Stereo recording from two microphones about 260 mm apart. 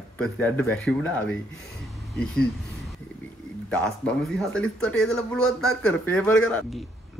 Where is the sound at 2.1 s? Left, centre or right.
Left.